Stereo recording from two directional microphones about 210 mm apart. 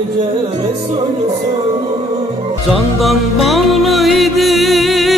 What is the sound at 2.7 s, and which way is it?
Music, centre (ahead or behind).